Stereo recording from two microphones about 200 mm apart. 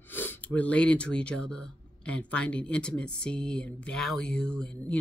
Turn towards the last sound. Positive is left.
turn(degrees=5)  # may be behind; listen again after turning